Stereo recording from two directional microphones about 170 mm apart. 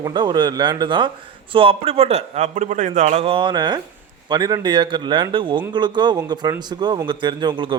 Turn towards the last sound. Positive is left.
turn(degrees=-25)  # may be behind; listen again after turning